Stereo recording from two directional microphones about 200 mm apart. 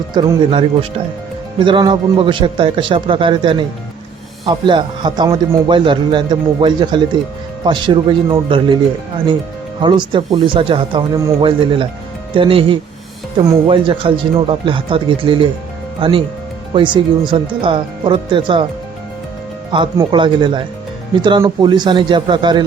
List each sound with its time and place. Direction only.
0.1 s speech: 20° right (ahead or behind)
9.8 s speech: 25° right (ahead or behind)
19.7 s speech: 25° right (ahead or behind)